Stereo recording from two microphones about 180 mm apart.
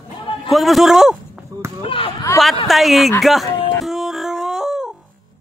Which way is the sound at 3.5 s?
30° left (ahead or behind).